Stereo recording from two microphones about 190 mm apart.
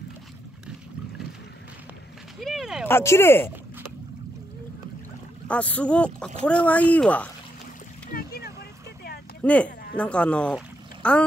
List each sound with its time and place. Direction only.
2.4 s a sound: centre (ahead or behind)
2.9 s speech: 15° left (ahead or behind)
5.5 s speech: 5° left (ahead or behind)
8.1 s splash: 55° left (ahead or behind)
9.4 s speech: 5° left (ahead or behind)